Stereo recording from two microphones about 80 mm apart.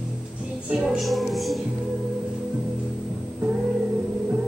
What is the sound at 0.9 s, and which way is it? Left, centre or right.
Music, centre.